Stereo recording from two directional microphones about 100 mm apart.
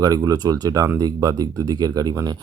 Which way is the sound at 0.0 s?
40° right (ahead or behind).